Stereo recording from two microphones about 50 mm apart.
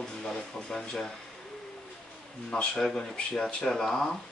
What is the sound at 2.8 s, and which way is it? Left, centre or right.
Speech, centre.